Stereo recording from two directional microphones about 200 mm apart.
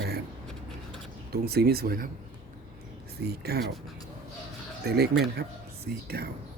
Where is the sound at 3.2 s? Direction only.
50° right (ahead or behind).